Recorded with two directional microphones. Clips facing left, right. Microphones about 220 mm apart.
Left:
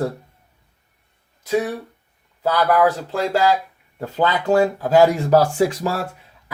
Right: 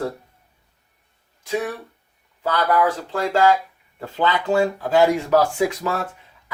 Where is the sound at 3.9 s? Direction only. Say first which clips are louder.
Left 2 dB; 45° left (ahead or behind).